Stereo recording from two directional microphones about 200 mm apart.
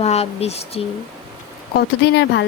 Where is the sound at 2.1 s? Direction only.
60° left (ahead or behind).